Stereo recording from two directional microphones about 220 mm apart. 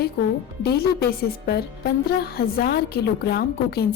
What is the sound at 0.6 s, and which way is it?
Speech, 45° left (ahead or behind).